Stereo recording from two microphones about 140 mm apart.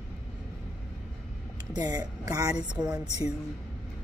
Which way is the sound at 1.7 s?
30° right (ahead or behind).